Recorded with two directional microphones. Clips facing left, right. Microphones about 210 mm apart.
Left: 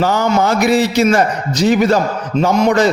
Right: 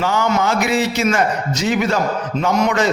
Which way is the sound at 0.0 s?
40° left (ahead or behind).